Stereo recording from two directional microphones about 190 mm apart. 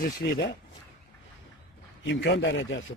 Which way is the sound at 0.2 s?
60° left (ahead or behind).